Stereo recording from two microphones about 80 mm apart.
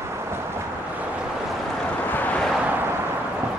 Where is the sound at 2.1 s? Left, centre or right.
Left.